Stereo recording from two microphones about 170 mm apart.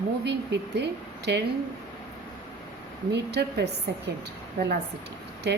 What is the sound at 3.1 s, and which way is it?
Speech, 80° right.